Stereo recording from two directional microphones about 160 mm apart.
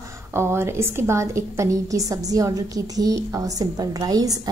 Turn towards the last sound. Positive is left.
turn(degrees=-25)  # may be behind; listen again after turning